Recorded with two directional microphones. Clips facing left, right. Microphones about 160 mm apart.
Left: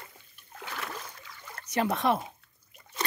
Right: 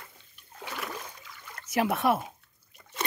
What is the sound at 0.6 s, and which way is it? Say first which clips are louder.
Splash: right 1 dB; 10° right (ahead or behind).